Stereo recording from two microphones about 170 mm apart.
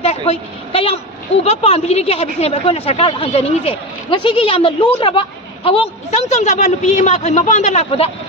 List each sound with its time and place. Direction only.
0.0 s a woman's voice: 35° left (ahead or behind)